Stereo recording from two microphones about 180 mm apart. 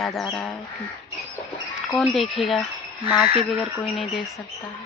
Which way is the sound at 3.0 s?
25° left (ahead or behind).